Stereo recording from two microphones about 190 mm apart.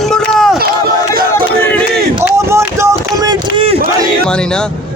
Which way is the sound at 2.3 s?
15° right (ahead or behind).